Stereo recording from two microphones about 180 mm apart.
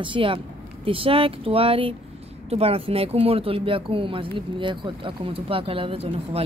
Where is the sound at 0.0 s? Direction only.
30° right (ahead or behind).